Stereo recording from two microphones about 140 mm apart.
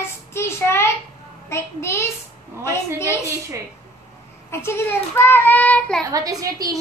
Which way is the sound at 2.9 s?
20° left (ahead or behind).